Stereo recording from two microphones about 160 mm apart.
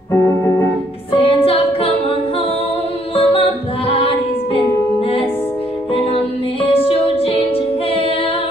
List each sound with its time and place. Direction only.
1.2 s music: 40° left (ahead or behind)
3.2 s music: 35° left (ahead or behind)
6.7 s music: 35° left (ahead or behind)